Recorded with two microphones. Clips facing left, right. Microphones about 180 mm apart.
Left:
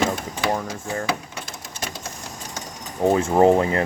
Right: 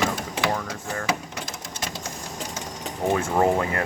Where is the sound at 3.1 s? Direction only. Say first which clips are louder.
Left 5 dB; 25° left (ahead or behind).